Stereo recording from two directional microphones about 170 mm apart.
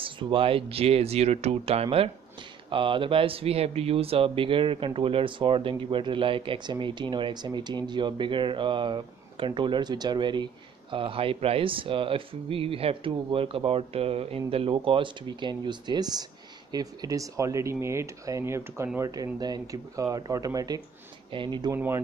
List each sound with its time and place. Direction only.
0.0 s speech: 30° right (ahead or behind)
21.7 s speech: 10° right (ahead or behind)